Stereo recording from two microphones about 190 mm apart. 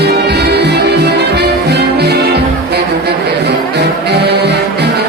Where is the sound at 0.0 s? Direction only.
60° right (ahead or behind).